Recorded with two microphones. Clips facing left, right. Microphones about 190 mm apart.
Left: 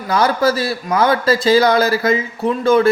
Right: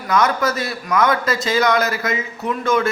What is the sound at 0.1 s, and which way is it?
A man's voice, 30° left (ahead or behind).